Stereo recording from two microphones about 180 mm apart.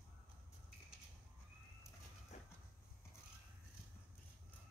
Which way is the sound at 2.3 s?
40° left (ahead or behind).